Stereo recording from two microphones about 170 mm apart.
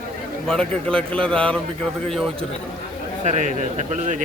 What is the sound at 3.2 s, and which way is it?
Speech, 45° right (ahead or behind).